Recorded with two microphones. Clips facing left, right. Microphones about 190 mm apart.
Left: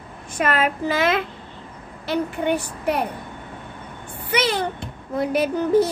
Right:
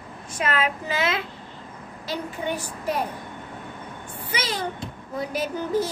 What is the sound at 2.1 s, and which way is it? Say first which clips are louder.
Speech: left 7 dB; 65° left (ahead or behind).